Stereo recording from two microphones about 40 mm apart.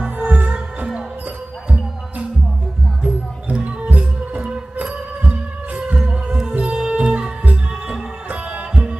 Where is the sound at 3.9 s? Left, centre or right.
Right.